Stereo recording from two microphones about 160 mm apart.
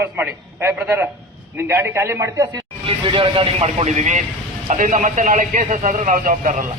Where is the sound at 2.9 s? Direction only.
30° right (ahead or behind); by 6.5 s 55° right (ahead or behind).